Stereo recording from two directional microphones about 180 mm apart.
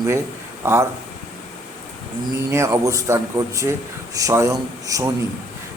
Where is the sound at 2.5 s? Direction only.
15° right (ahead or behind).